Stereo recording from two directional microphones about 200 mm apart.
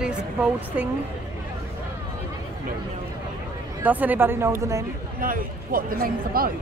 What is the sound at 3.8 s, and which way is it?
Speech, 10° right (ahead or behind).